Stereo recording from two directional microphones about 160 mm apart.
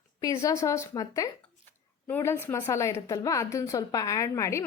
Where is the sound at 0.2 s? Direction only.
20° left (ahead or behind).